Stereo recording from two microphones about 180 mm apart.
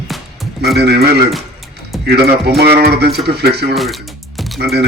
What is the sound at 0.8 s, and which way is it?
Speech, 65° right (ahead or behind).